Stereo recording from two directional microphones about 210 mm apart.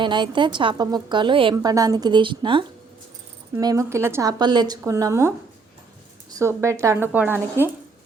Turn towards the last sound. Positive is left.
turn(degrees=-10)  # may be behind; listen again after turning